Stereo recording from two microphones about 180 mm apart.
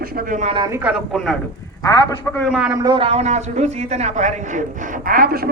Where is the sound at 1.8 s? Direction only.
20° left (ahead or behind).